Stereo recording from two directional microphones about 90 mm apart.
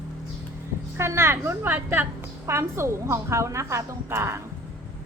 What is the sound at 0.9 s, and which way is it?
A woman's voice, 30° right (ahead or behind).